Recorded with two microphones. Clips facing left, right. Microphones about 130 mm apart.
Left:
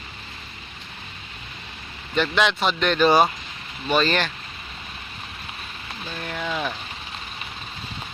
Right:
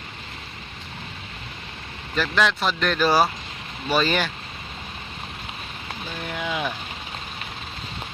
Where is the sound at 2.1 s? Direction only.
Centre (ahead or behind).